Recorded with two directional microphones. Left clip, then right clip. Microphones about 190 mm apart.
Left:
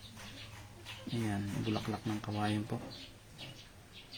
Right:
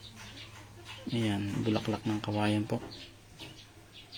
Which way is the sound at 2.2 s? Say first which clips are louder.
Right 6 dB; 20° right (ahead or behind).